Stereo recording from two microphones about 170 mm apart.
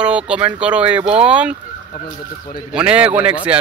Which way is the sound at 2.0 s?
50° left (ahead or behind).